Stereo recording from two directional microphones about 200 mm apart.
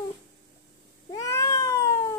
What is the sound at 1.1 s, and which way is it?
Cat, 15° left (ahead or behind).